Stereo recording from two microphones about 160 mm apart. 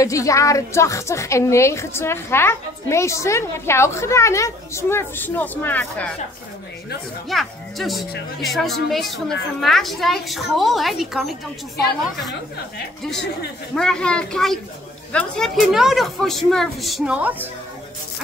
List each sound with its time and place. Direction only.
0.0 s a woman's voice: 20° left (ahead or behind)
7.2 s a woman's voice: centre (ahead or behind)
13.7 s a woman's voice: 5° left (ahead or behind)